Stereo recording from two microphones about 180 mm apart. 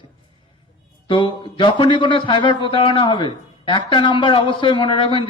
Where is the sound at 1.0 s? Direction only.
25° left (ahead or behind).